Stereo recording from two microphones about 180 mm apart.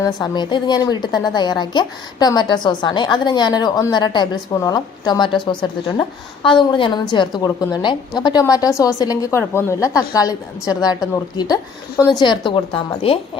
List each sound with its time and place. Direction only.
0.0 s speech: 25° left (ahead or behind)